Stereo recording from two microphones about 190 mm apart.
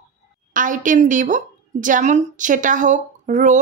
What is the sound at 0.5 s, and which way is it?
A woman's voice, 45° right (ahead or behind).